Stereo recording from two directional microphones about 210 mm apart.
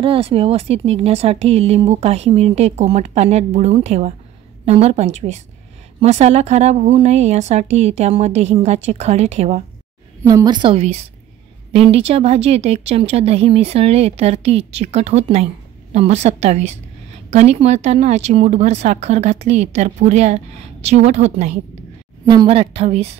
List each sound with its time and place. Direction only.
0.0 s speech: 25° right (ahead or behind)
10.2 s speech: 20° right (ahead or behind)
22.2 s speech: 20° right (ahead or behind)